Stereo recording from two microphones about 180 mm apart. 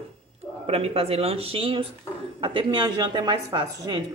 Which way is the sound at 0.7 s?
35° right (ahead or behind).